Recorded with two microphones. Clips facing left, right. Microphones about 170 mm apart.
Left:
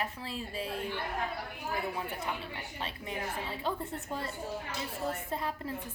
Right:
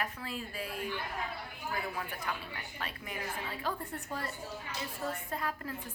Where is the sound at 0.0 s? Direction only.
30° left (ahead or behind).